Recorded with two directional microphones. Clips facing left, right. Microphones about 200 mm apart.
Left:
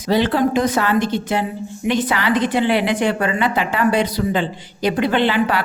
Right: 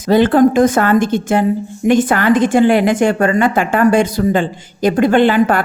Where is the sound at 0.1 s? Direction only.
50° right (ahead or behind).